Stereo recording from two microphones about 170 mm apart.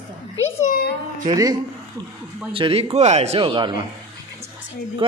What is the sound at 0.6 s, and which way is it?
Speech, 60° left (ahead or behind).